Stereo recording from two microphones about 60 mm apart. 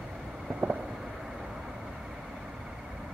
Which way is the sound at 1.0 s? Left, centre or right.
Centre.